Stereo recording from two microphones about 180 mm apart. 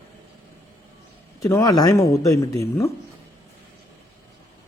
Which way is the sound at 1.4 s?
15° left (ahead or behind).